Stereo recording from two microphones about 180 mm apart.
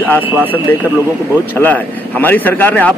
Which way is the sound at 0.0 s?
10° left (ahead or behind).